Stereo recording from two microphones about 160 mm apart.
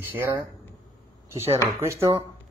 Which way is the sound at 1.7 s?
15° right (ahead or behind).